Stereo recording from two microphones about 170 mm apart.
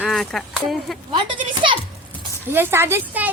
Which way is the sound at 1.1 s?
25° right (ahead or behind).